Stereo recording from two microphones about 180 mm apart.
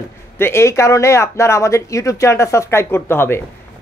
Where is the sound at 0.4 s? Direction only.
15° left (ahead or behind).